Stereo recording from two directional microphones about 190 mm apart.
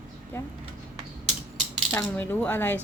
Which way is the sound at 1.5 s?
10° left (ahead or behind).